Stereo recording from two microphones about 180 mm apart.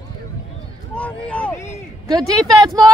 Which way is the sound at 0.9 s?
5° left (ahead or behind).